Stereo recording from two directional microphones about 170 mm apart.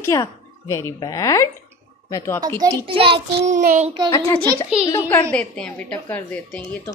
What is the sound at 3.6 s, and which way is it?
Child singing, 45° right (ahead or behind).